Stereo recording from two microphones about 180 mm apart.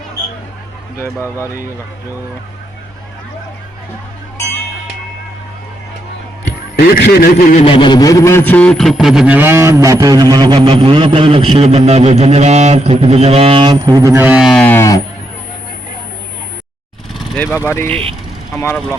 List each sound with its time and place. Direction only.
6.7 s a man's voice: 60° left (ahead or behind); by 7.6 s 45° left (ahead or behind)
7.6 s a sound: 30° left (ahead or behind)
17.3 s speech: 10° left (ahead or behind)